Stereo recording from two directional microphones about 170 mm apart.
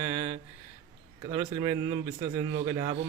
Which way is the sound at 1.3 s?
20° right (ahead or behind).